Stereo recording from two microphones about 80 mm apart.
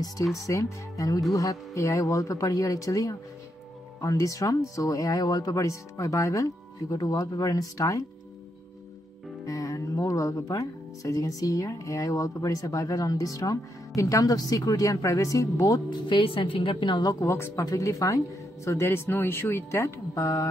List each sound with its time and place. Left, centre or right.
0.4 s speech: left
5.2 s speech: left
9.5 s speech: left
15.9 s a woman's voice: left
17.0 s speech: left
17.3 s speech: left